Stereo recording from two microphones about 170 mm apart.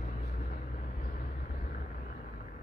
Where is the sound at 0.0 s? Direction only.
50° left (ahead or behind).